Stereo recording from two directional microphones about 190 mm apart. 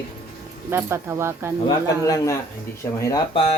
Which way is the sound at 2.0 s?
15° left (ahead or behind).